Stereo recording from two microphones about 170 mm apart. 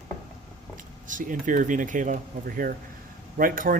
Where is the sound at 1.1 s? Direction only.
50° right (ahead or behind).